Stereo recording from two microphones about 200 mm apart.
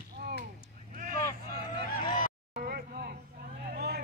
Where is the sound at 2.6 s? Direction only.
50° right (ahead or behind).